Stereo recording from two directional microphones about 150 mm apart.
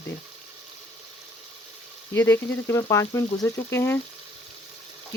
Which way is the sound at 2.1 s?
15° left (ahead or behind).